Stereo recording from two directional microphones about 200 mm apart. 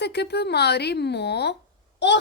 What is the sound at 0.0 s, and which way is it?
A woman's voice, 55° left (ahead or behind).